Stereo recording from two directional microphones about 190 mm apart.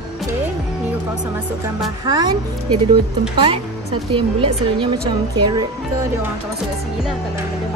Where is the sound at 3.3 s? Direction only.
30° right (ahead or behind).